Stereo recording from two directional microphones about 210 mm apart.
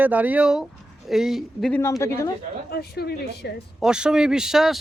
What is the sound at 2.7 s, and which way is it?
Speech, 50° left (ahead or behind).